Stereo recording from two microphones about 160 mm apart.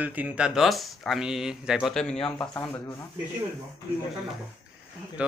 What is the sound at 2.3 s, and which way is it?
Speech, 15° left (ahead or behind).